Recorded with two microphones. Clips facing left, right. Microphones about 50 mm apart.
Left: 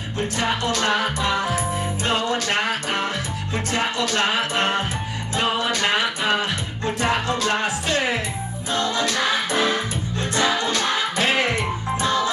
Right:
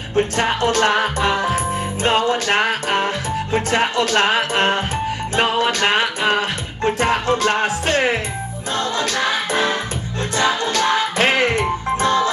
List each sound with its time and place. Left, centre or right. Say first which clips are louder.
0.1 s music: right 6 dB; right
10.3 s music: right 3 dB; right